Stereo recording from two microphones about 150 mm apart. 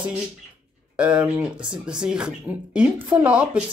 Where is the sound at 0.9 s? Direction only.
5° right (ahead or behind).